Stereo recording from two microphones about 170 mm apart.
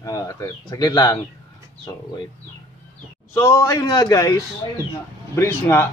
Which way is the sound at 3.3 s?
15° left (ahead or behind).